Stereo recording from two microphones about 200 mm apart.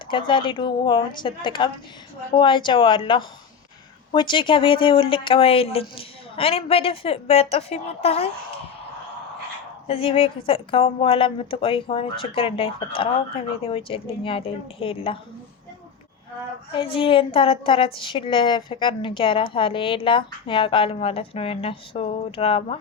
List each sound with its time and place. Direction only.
0.1 s a woman's voice: 25° left (ahead or behind)
9.8 s a woman's voice: 30° left (ahead or behind)
16.7 s a woman's voice: 25° left (ahead or behind)